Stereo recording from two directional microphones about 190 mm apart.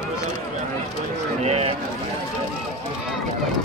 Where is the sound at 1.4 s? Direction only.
35° right (ahead or behind).